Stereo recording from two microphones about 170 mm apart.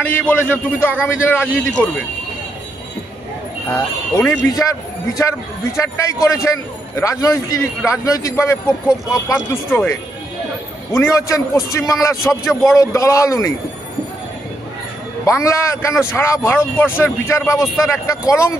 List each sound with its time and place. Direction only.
0.0 s a man's voice: 10° left (ahead or behind)
3.7 s a man's voice: 15° left (ahead or behind)
10.9 s a man's voice: 15° left (ahead or behind)
15.2 s a man's voice: 15° left (ahead or behind)